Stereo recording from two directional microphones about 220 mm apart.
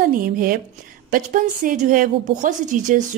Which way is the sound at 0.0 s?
40° right (ahead or behind).